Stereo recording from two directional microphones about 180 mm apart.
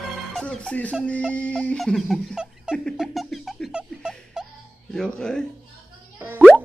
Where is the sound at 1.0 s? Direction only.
5° left (ahead or behind).